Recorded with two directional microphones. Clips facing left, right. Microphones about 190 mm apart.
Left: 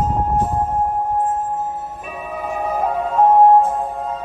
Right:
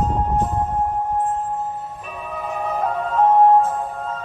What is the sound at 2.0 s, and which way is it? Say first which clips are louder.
Music: left 2 dB; 10° left (ahead or behind).